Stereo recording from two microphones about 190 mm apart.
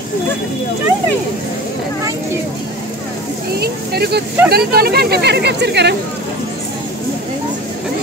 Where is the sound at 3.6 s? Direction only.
55° right (ahead or behind).